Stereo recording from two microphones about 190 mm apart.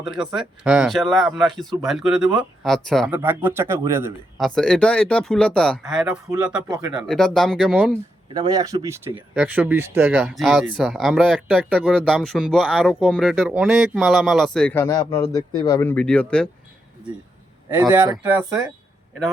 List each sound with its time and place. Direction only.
0.3 s speech: 5° right (ahead or behind)
3.1 s speech: 10° right (ahead or behind)
4.4 s speech: 5° left (ahead or behind)
8.3 s speech: 20° right (ahead or behind); by 14.8 s 5° left (ahead or behind)
14.8 s speech: 20° left (ahead or behind); by 16.5 s 5° left (ahead or behind)
17.8 s speech: 15° right (ahead or behind)